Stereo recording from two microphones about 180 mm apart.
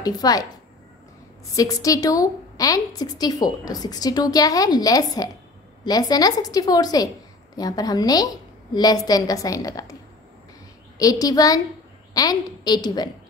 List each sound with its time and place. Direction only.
0.0 s a woman's voice: 20° left (ahead or behind)
1.5 s a woman's voice: 20° left (ahead or behind)
11.0 s a woman's voice: 20° left (ahead or behind)